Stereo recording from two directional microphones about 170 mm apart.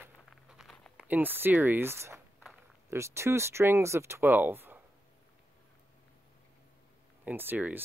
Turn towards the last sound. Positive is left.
turn(degrees=-10)  # may be behind; listen again after turning